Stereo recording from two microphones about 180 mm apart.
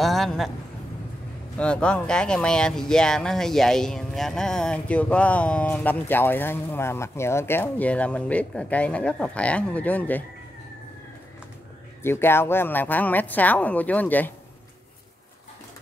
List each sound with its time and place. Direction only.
0.0 s a sound: centre (ahead or behind)
1.6 s speech: 5° left (ahead or behind)
12.0 s speech: 15° left (ahead or behind)